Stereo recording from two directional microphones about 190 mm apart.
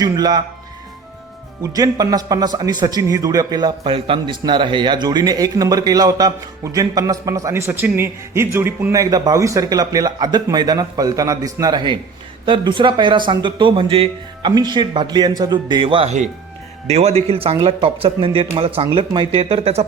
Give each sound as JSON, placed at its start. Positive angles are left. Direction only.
{"t": 0.0, "sound": "a man's voice", "side_deg": -20}
{"t": 1.6, "sound": "a man's voice", "side_deg": -20}